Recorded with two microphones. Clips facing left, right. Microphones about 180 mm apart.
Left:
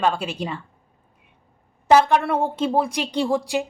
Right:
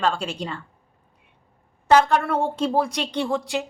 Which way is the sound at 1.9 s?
10° left (ahead or behind).